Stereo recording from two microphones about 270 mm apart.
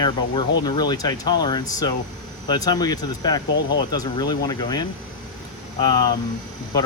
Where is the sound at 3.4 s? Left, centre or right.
Left.